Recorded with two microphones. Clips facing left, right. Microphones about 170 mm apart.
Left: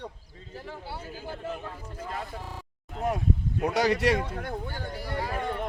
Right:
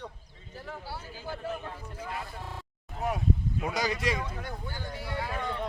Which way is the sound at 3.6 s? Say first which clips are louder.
Left 7 dB; 70° left (ahead or behind).